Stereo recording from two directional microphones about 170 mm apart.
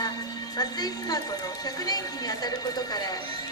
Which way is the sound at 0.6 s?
20° left (ahead or behind).